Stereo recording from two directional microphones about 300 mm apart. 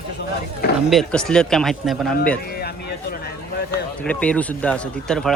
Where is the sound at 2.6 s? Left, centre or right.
Left.